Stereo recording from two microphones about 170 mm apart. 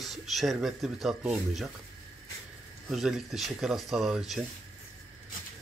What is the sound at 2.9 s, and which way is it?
Speech, centre (ahead or behind).